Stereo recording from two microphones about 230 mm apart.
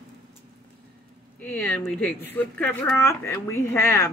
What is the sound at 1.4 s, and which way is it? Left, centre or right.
Speech, centre.